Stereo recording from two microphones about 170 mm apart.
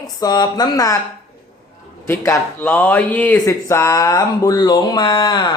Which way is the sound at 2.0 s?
15° left (ahead or behind).